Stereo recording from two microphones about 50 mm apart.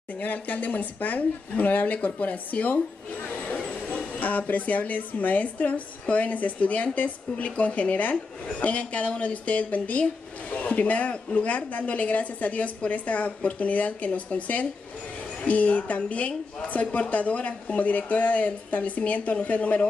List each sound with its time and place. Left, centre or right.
0.2 s a woman's voice: left
3.5 s a sound: centre
4.2 s a woman's voice: left